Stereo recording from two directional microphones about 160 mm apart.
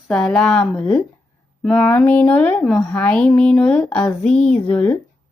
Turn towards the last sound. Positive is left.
turn(degrees=10)  # may be behind; listen again after turning